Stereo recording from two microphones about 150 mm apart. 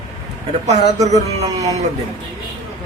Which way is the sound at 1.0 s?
50° right (ahead or behind).